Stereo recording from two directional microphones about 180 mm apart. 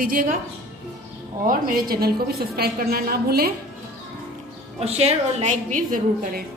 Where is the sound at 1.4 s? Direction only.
55° right (ahead or behind).